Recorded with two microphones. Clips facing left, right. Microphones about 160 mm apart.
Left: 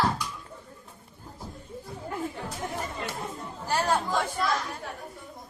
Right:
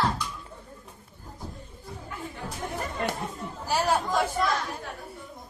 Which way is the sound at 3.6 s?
5° right (ahead or behind).